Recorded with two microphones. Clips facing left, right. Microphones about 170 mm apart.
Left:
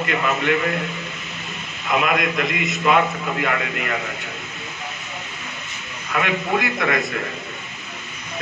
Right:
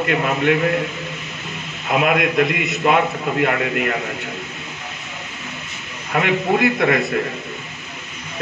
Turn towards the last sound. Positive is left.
turn(degrees=-50)  # may be behind; listen again after turning